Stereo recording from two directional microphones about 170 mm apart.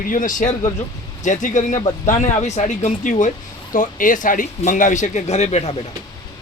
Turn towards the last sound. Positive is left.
turn(degrees=40)  # may be behind; listen again after turning